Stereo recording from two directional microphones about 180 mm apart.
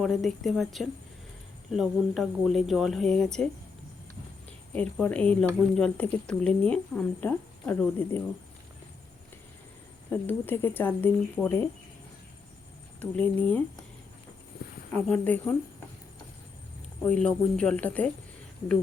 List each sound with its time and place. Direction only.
0.0 s speech: centre (ahead or behind)
4.7 s speech: 10° left (ahead or behind)
10.1 s speech: 10° left (ahead or behind)
13.0 s speech: 10° left (ahead or behind)
14.6 s a sound: 60° left (ahead or behind)
14.9 s speech: 10° left (ahead or behind)
17.0 s speech: 5° left (ahead or behind)